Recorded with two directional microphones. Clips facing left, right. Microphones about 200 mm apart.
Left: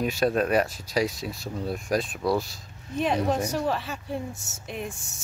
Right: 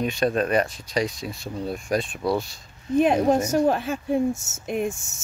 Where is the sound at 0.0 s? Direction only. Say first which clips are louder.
Right 1 dB; 5° left (ahead or behind).